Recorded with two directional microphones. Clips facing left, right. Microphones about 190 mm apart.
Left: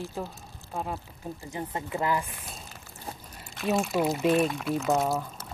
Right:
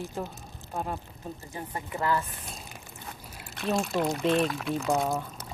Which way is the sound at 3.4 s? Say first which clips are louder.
Left 1 dB; centre (ahead or behind).